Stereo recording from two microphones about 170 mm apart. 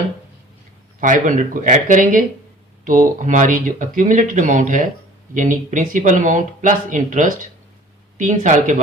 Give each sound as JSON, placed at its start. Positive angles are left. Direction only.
{"t": 1.0, "sound": "speech", "side_deg": -50}